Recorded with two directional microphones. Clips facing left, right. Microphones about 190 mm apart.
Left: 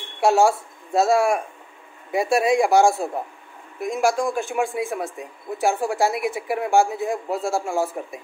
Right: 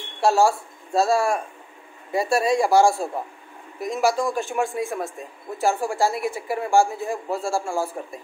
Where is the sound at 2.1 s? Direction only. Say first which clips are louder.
Left 2 dB; 15° left (ahead or behind).